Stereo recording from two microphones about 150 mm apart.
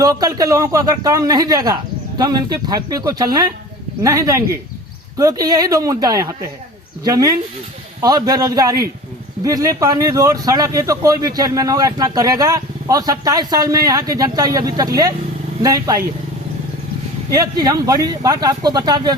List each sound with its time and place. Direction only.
0.0 s speech: 25° right (ahead or behind)
17.3 s speech: 25° right (ahead or behind)